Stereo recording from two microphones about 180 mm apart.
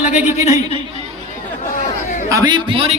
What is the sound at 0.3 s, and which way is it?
Speech, 35° left (ahead or behind).